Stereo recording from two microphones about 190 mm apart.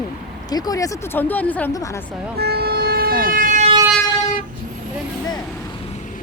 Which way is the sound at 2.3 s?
55° right (ahead or behind).